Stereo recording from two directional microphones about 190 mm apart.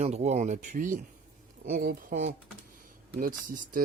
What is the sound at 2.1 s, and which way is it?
Speech, 35° right (ahead or behind).